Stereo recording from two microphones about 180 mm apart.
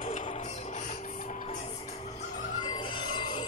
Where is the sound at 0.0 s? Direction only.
40° left (ahead or behind).